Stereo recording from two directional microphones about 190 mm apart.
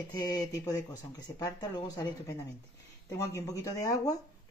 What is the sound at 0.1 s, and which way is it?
Speech, 20° left (ahead or behind).